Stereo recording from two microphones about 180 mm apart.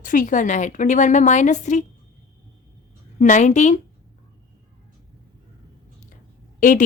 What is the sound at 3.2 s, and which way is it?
Speech, 45° left (ahead or behind).